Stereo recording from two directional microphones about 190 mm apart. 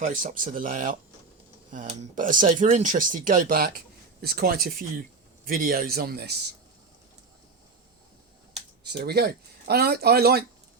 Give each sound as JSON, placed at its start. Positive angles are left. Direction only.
{"t": 0.0, "sound": "speech", "side_deg": -45}
{"t": 8.8, "sound": "speech", "side_deg": -60}